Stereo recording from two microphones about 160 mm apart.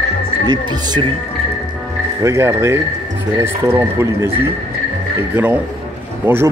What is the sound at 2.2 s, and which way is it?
Speech, 15° right (ahead or behind).